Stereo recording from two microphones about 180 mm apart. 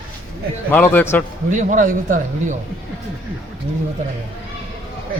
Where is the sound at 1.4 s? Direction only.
45° right (ahead or behind).